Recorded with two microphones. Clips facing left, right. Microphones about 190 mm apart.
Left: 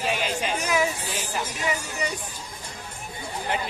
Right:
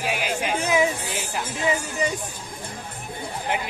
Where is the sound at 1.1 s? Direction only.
55° right (ahead or behind).